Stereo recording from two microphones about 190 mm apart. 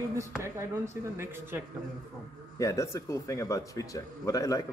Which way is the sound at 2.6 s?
15° left (ahead or behind).